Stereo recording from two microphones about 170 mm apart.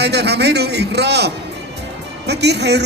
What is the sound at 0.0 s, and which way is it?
A man's voice, 75° right (ahead or behind).